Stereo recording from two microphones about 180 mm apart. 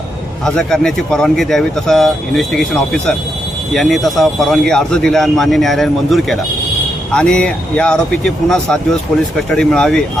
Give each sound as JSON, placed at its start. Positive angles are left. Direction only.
{"t": 0.4, "sound": "speech", "side_deg": 5}